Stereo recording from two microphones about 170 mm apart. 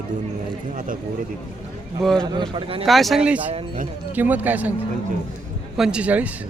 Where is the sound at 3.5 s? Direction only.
45° right (ahead or behind).